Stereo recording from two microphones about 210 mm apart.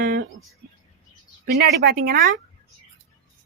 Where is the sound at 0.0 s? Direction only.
50° right (ahead or behind).